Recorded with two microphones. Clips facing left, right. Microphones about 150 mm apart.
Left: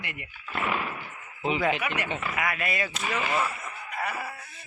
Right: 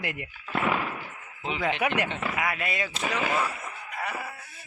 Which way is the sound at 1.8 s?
85° right.